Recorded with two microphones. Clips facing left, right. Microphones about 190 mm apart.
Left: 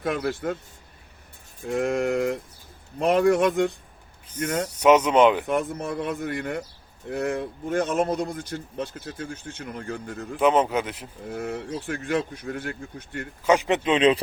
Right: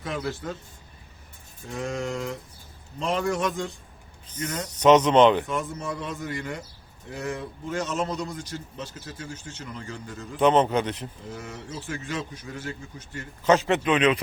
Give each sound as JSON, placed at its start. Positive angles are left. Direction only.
{"t": 0.0, "sound": "speech", "side_deg": 55}
{"t": 1.6, "sound": "speech", "side_deg": 60}
{"t": 4.8, "sound": "speech", "side_deg": 10}
{"t": 5.5, "sound": "speech", "side_deg": 60}
{"t": 10.3, "sound": "speech", "side_deg": 5}
{"t": 11.3, "sound": "speech", "side_deg": 60}
{"t": 13.4, "sound": "speech", "side_deg": 15}